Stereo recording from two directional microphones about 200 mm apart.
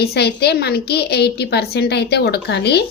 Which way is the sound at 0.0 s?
55° left (ahead or behind).